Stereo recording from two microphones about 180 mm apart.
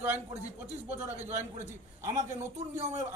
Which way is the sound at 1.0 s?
40° right (ahead or behind).